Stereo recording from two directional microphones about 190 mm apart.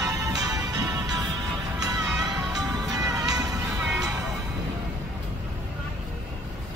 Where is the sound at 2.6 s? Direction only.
20° right (ahead or behind).